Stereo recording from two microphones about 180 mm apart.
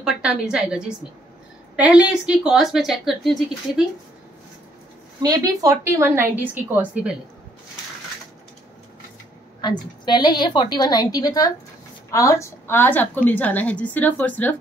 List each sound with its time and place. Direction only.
0.0 s a woman's voice: 5° right (ahead or behind)
5.2 s a woman's voice: 20° right (ahead or behind)
9.6 s a woman's voice: 25° left (ahead or behind); by 14.5 s 10° left (ahead or behind)